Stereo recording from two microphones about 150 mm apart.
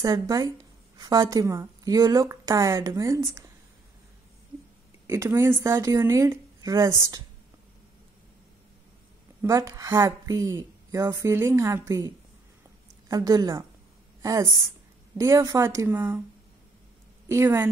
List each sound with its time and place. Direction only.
0.0 s a woman's voice: 25° right (ahead or behind)
5.0 s a woman's voice: 20° right (ahead or behind)
9.4 s a woman's voice: 20° right (ahead or behind)
13.1 s a woman's voice: 25° right (ahead or behind)
15.1 s a woman's voice: 20° right (ahead or behind)
17.3 s a woman's voice: 15° right (ahead or behind)